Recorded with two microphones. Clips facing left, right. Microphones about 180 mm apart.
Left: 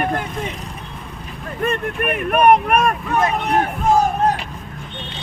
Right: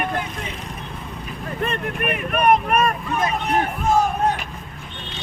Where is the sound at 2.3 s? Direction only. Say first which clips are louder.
Left 4 dB; 60° left (ahead or behind).